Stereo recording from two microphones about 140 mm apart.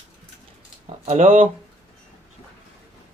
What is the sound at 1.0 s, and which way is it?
Speech, 65° right (ahead or behind).